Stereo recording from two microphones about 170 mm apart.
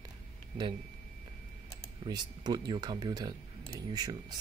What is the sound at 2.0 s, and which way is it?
Speech, 25° right (ahead or behind).